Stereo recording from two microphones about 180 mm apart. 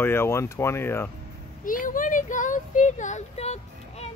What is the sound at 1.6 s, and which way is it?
Speech, 50° left (ahead or behind).